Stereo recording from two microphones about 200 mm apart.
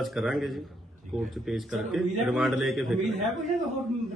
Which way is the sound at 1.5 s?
Centre (ahead or behind).